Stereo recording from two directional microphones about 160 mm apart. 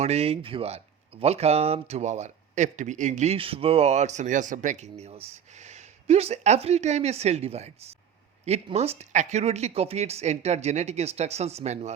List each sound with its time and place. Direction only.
0.0 s speech: 40° right (ahead or behind)